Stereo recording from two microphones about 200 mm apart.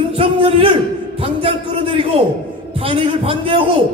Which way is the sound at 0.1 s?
25° right (ahead or behind).